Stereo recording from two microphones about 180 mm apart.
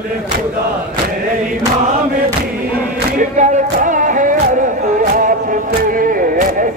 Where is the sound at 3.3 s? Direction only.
45° right (ahead or behind).